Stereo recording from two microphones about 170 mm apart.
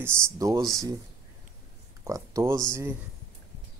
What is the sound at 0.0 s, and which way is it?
Speech, 15° right (ahead or behind).